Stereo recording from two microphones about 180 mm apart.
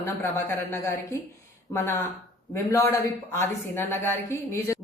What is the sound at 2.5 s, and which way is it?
Speech, 15° left (ahead or behind).